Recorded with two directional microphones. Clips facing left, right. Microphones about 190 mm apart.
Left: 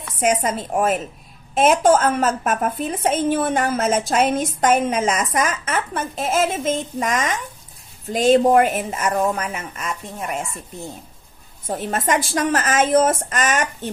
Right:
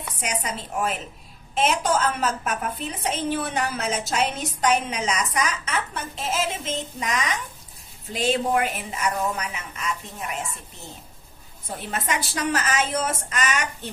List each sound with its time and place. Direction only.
0.2 s a woman's voice: 50° left (ahead or behind)
11.6 s a woman's voice: 45° left (ahead or behind)